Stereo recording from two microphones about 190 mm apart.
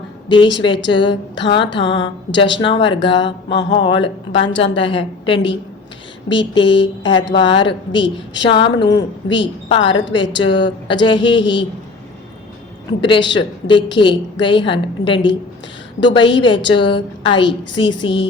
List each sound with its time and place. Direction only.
0.3 s a woman's voice: 25° left (ahead or behind)
1.8 s a sound: 70° left (ahead or behind)
2.3 s a woman's voice: 25° left (ahead or behind)
13.0 s a woman's voice: 25° left (ahead or behind)